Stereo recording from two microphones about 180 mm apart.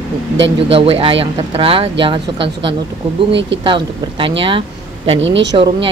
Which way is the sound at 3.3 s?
80° right.